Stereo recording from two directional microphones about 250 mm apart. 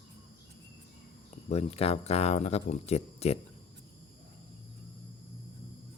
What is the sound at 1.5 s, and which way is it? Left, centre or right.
Speech, left.